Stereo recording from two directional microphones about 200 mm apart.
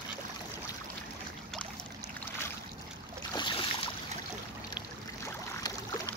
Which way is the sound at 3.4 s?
25° left (ahead or behind).